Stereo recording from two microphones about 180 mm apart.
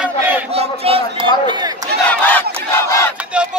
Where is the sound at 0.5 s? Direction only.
35° right (ahead or behind).